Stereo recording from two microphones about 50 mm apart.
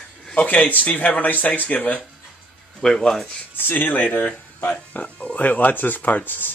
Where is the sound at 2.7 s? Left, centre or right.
Centre.